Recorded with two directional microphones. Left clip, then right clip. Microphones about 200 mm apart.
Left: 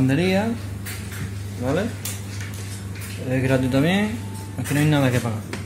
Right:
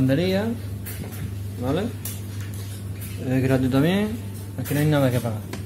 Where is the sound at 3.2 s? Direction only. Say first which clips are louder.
Left 1 dB; 10° right (ahead or behind).